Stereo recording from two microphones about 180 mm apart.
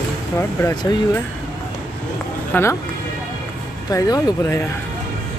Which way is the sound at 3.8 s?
20° left (ahead or behind).